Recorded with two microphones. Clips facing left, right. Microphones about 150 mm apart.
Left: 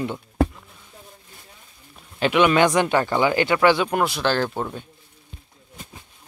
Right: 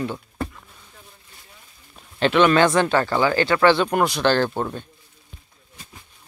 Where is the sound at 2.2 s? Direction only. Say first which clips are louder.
Right 1 dB; 10° left (ahead or behind).